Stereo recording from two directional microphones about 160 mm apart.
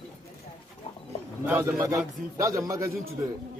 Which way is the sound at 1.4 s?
10° right (ahead or behind).